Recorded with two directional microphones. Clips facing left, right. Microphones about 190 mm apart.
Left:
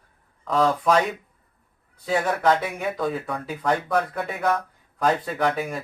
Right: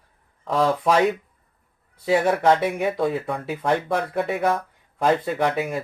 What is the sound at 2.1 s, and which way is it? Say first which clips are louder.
Speech: right 3 dB; 25° right (ahead or behind).